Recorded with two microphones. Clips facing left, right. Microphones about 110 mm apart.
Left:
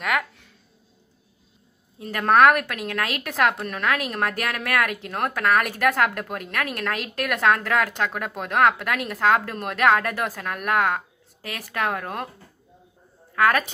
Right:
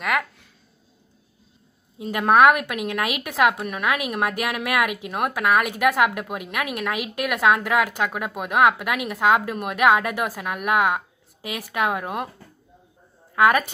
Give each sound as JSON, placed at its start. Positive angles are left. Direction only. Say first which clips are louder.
{"t": 0.0, "sound": "a sound", "louder": "right 1 dB", "side_deg": 0}
{"t": 2.0, "sound": "a woman's voice", "louder": "right 1 dB", "side_deg": -15}
{"t": 13.3, "sound": "a woman's voice", "louder": "right 2 dB", "side_deg": -15}